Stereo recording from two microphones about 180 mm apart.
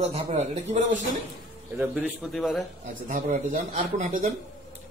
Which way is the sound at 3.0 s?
45° right (ahead or behind).